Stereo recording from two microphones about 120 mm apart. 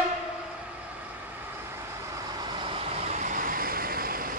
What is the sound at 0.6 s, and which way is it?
Vehicle, 10° right (ahead or behind).